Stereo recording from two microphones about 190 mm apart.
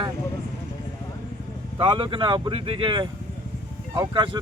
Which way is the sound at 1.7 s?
25° right (ahead or behind).